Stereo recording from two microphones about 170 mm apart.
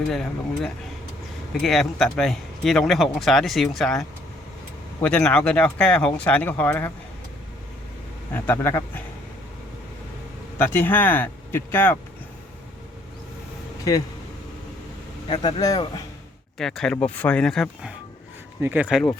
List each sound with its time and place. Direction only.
0.1 s speech: 5° left (ahead or behind)
8.3 s speech: 15° left (ahead or behind)
10.6 s speech: 10° left (ahead or behind)
15.3 s speech: 30° left (ahead or behind)
16.6 s speech: centre (ahead or behind)
18.6 s speech: 10° right (ahead or behind)